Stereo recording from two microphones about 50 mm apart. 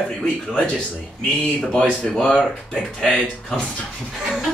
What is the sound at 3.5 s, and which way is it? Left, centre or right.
Speech, centre.